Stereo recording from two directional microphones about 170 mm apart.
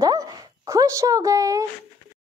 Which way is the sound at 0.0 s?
20° right (ahead or behind).